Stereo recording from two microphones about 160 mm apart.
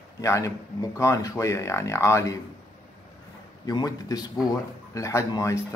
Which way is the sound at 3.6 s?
25° left (ahead or behind).